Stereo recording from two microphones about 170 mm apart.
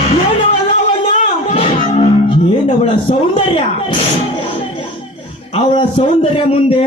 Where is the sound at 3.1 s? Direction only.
35° left (ahead or behind).